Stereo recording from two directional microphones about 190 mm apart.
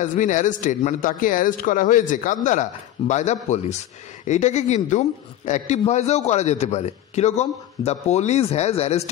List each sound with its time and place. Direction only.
0.0 s speech: 40° left (ahead or behind)